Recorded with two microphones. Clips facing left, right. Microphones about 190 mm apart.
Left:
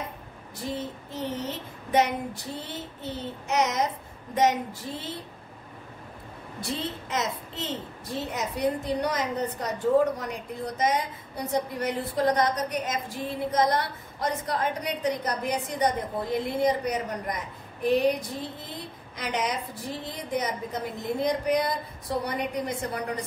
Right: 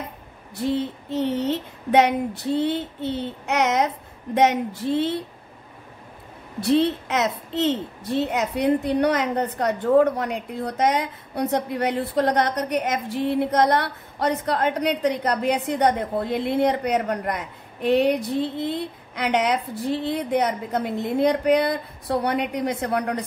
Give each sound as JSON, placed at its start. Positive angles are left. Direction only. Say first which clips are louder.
{"t": 0.6, "sound": "a woman's voice", "louder": "right 9 dB", "side_deg": -65}
{"t": 6.6, "sound": "a woman's voice", "louder": "right 13 dB", "side_deg": -70}